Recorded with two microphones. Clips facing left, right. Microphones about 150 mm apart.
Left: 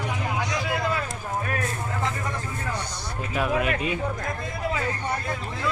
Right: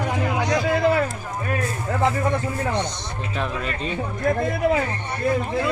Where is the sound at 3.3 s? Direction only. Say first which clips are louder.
Left 4 dB; 10° left (ahead or behind).